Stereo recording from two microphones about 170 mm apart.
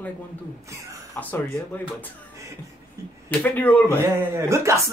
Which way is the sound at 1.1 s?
10° left (ahead or behind).